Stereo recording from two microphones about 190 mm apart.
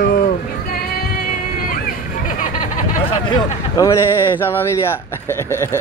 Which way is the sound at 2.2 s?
40° left (ahead or behind).